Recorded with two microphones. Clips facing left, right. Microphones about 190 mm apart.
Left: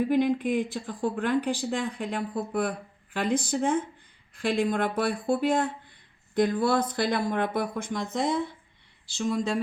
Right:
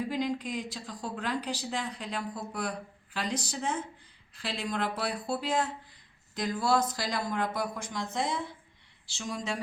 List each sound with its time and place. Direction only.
0.0 s speech: 55° left (ahead or behind)